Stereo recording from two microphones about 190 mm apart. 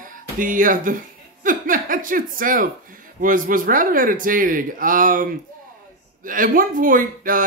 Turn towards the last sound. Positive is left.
turn(degrees=-45)  # may be behind; listen again after turning